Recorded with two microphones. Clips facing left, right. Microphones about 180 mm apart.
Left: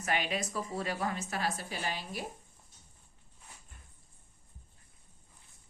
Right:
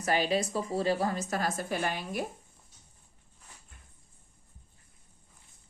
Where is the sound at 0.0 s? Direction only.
35° right (ahead or behind); by 2.2 s 55° right (ahead or behind).